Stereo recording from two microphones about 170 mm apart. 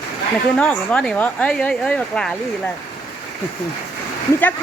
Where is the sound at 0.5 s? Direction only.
5° left (ahead or behind).